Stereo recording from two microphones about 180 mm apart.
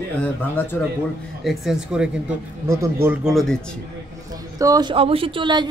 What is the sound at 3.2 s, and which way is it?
Speech, centre (ahead or behind).